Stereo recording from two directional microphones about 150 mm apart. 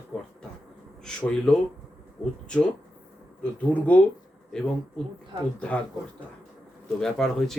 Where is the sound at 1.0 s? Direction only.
5° left (ahead or behind).